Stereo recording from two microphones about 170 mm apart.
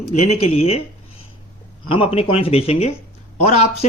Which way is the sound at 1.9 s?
30° left (ahead or behind).